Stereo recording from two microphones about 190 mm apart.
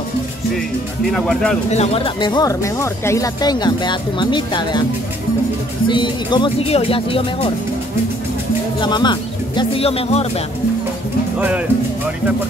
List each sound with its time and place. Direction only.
1.1 s speech: centre (ahead or behind)
1.7 s speech: 35° left (ahead or behind)
2.2 s speech: 20° left (ahead or behind)
5.9 s speech: 25° left (ahead or behind)
8.8 s speech: 25° left (ahead or behind)
11.3 s speech: 5° right (ahead or behind)